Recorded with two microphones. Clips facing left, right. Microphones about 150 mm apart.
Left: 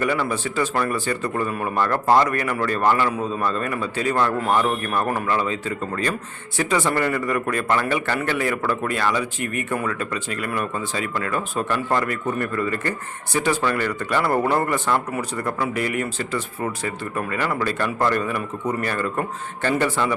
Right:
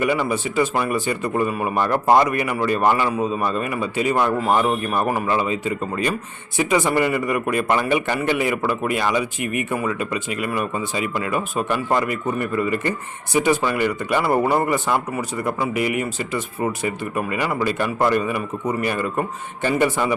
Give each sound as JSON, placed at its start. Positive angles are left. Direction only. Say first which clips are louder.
{"t": 0.0, "sound": "speech", "louder": "right 2 dB", "side_deg": -10}
{"t": 4.9, "sound": "speech", "louder": "right 2 dB", "side_deg": -5}